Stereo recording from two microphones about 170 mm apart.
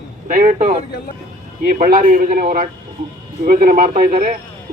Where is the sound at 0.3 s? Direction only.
50° right (ahead or behind).